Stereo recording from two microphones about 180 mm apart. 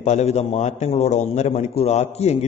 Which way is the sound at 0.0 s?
40° left (ahead or behind).